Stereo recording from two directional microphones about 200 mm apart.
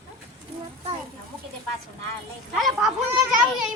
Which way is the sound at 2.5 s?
Centre (ahead or behind).